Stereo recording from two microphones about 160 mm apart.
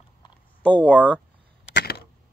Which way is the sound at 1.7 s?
80° left.